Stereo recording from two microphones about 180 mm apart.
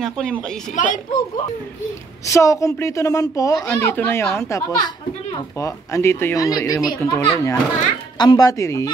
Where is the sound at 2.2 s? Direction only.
15° left (ahead or behind).